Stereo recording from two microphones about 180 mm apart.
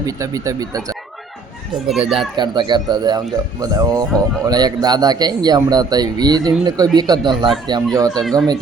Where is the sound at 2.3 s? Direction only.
25° right (ahead or behind).